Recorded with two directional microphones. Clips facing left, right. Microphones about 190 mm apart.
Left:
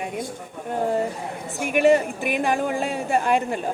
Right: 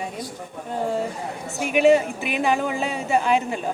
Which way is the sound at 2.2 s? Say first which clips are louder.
Even; 50° left (ahead or behind).